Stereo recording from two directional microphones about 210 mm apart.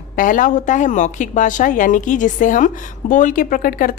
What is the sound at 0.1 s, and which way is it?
A woman's voice, 40° left (ahead or behind).